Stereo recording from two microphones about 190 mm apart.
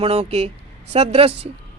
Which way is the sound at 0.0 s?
30° right (ahead or behind).